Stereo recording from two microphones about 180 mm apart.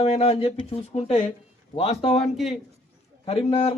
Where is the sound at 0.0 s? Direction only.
35° left (ahead or behind).